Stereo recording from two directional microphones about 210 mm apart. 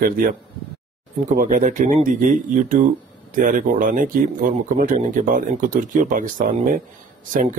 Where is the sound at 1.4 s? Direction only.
40° right (ahead or behind).